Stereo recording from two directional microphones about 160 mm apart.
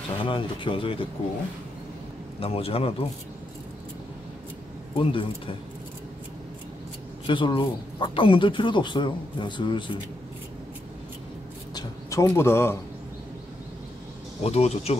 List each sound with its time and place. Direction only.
0.2 s speech: 35° left (ahead or behind)
2.4 s speech: 35° left (ahead or behind)
4.9 s speech: 30° left (ahead or behind)
7.2 s speech: 30° left (ahead or behind)
11.7 s a sound: 20° left (ahead or behind)
14.4 s speech: 40° left (ahead or behind)